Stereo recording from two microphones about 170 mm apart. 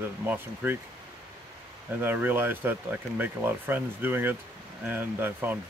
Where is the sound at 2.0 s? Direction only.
10° right (ahead or behind).